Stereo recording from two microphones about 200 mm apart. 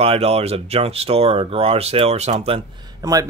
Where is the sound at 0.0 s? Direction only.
30° right (ahead or behind).